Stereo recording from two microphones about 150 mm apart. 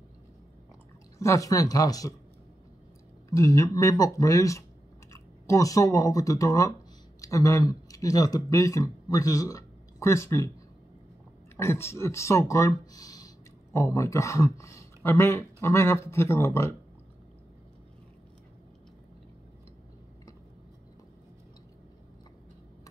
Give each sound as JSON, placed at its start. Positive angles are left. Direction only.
{"t": 1.1, "sound": "speech", "side_deg": 20}
{"t": 3.3, "sound": "speech", "side_deg": 20}
{"t": 11.5, "sound": "speech", "side_deg": 15}